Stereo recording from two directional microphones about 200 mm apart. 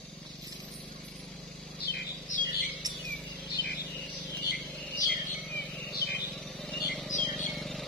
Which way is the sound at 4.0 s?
5° left (ahead or behind).